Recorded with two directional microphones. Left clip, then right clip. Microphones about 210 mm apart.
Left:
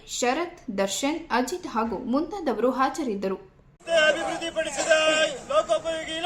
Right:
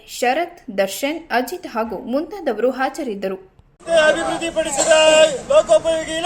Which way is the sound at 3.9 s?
Centre (ahead or behind).